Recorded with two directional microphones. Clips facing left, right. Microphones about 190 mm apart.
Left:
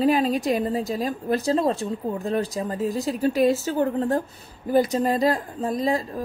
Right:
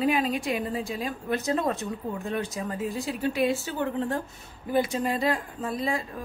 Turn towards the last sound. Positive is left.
turn(degrees=35)  # may be behind; listen again after turning